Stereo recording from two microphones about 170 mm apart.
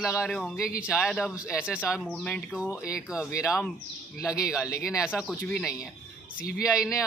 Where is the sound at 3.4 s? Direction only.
15° left (ahead or behind).